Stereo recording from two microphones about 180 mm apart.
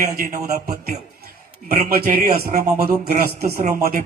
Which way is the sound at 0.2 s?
50° right (ahead or behind).